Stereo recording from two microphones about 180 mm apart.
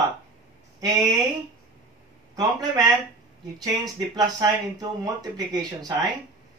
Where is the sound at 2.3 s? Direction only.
20° right (ahead or behind).